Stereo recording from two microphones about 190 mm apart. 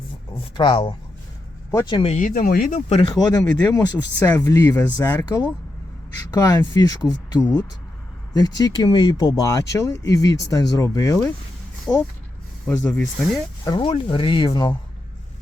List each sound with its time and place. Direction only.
0.3 s speech: 30° left (ahead or behind)
2.1 s speech: 45° left (ahead or behind)
2.9 s speech: 25° left (ahead or behind)
11.9 s speech: 5° left (ahead or behind)
12.6 s speech: 15° left (ahead or behind)